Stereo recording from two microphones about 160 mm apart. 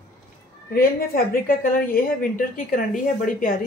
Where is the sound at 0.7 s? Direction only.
65° left (ahead or behind).